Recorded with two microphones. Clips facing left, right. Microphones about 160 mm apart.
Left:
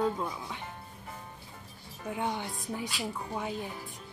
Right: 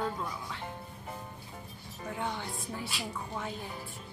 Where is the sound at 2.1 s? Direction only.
15° left (ahead or behind).